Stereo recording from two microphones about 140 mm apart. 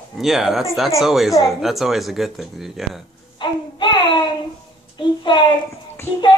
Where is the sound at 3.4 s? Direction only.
35° left (ahead or behind).